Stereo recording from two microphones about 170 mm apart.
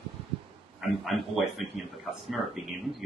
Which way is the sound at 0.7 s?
Centre (ahead or behind).